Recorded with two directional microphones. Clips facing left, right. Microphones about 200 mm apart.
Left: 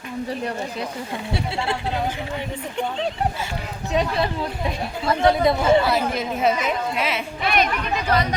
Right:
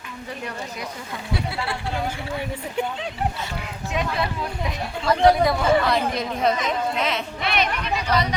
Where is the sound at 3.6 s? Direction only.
35° left (ahead or behind).